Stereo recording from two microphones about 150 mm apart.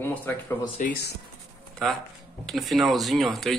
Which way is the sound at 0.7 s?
70° left (ahead or behind).